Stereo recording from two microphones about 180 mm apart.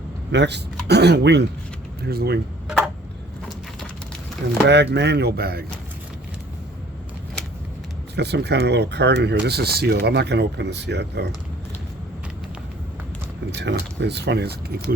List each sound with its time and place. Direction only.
0.3 s speech: 70° right (ahead or behind)
2.6 s tick-tock: 5° right (ahead or behind)
4.6 s speech: 75° right (ahead or behind)
8.1 s speech: 65° right (ahead or behind)
13.5 s speech: 70° right (ahead or behind)